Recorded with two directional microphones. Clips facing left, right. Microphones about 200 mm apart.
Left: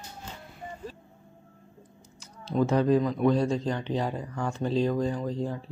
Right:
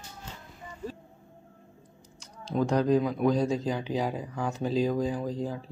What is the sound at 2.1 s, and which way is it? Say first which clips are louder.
Speech: left 2 dB; 5° left (ahead or behind).